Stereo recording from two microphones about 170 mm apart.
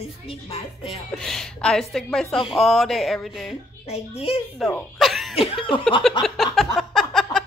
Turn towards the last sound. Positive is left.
turn(degrees=0)  # may be behind; listen again after turning